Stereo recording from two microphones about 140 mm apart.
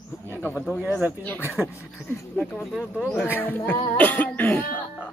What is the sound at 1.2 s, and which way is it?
Speech, 15° left (ahead or behind).